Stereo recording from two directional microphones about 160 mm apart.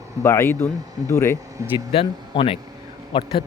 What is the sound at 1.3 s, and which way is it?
Speech, 20° right (ahead or behind).